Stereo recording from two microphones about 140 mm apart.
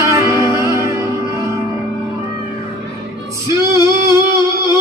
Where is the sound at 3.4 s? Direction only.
20° right (ahead or behind).